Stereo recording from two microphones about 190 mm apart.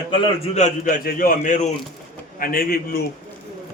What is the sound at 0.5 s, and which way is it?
A man's voice, 40° left (ahead or behind).